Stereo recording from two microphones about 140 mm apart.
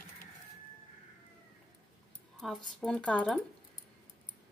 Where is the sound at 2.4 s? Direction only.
Centre (ahead or behind).